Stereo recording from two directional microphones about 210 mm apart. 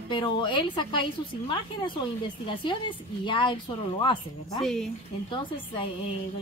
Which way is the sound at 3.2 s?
25° left (ahead or behind).